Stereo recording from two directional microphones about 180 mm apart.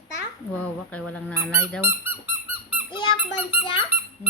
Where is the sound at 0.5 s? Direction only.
5° left (ahead or behind).